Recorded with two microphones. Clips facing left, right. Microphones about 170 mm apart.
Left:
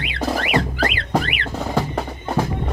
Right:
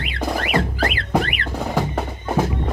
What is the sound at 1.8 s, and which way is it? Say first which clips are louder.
Music: left 1 dB; 5° right (ahead or behind).